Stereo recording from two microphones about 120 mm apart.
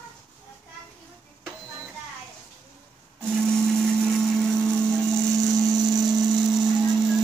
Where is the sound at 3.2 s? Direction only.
5° left (ahead or behind).